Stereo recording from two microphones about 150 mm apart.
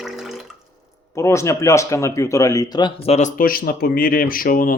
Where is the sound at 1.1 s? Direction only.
20° left (ahead or behind).